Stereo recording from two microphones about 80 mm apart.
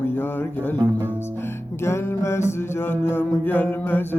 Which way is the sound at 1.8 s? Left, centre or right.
Left.